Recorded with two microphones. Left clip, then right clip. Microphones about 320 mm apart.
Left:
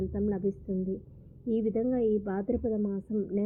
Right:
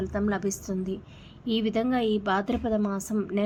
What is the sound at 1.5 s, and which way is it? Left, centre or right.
A woman's voice, centre.